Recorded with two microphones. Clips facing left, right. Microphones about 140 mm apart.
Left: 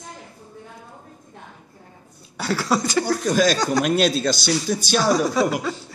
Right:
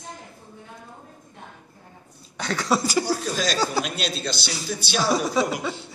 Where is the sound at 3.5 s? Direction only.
5° right (ahead or behind).